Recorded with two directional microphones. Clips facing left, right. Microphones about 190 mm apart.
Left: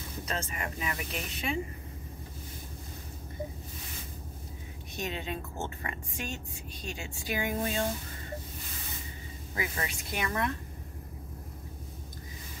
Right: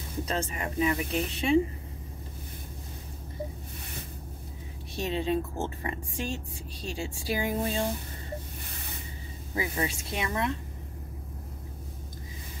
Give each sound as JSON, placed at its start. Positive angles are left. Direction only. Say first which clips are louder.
{"t": 0.2, "sound": "speech", "louder": "right 5 dB", "side_deg": -35}
{"t": 4.9, "sound": "speech", "louder": "right 8 dB", "side_deg": -30}
{"t": 9.6, "sound": "speech", "louder": "right 5 dB", "side_deg": -25}